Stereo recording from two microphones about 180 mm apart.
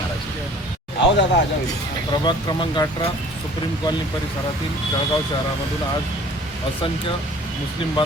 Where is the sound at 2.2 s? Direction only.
25° left (ahead or behind).